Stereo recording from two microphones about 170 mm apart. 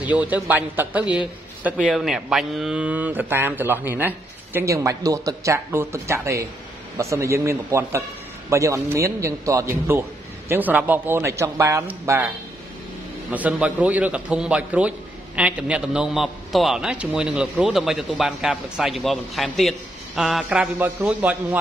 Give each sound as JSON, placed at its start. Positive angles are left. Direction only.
{"t": 0.0, "sound": "speech", "side_deg": -10}
{"t": 13.3, "sound": "a man's voice", "side_deg": -10}